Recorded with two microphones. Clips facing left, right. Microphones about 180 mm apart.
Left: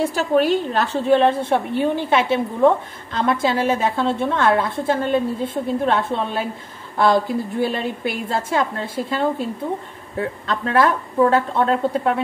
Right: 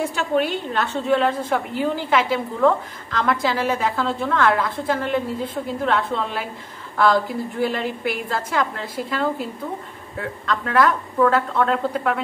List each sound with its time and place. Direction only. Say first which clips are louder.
0.0 s a woman's voice: left 4 dB; 40° left (ahead or behind)
7.6 s a woman's voice: left 1 dB; 25° left (ahead or behind)